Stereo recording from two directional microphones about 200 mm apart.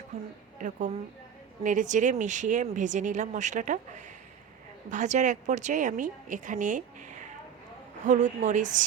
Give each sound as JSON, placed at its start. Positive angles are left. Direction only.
{"t": 0.6, "sound": "speech", "side_deg": -35}